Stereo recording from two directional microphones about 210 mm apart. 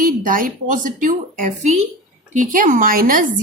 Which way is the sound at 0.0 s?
40° right (ahead or behind).